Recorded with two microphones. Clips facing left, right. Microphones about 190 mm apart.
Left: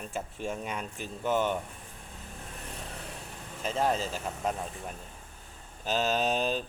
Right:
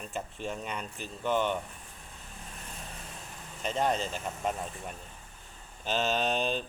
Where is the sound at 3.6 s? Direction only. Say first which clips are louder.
Left 1 dB; 5° left (ahead or behind).